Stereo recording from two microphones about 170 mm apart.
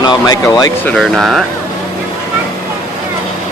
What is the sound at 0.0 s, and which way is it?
Speech, 25° left (ahead or behind).